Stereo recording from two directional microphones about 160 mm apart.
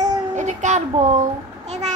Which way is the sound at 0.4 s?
50° right (ahead or behind).